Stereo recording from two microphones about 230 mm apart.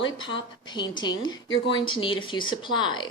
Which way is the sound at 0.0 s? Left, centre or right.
Left.